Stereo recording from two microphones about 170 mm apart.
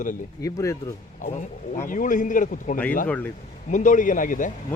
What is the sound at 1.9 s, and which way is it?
Speech, 50° left (ahead or behind).